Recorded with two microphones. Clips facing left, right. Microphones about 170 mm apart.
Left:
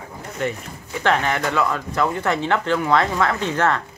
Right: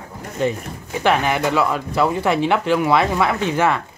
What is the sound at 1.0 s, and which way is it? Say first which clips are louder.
Speech: right 3 dB; 10° right (ahead or behind).